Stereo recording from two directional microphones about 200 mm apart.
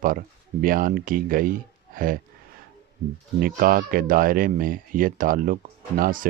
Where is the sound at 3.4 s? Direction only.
45° right (ahead or behind).